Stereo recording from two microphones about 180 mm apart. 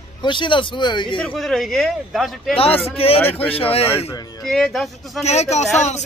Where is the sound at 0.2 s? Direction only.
25° left (ahead or behind).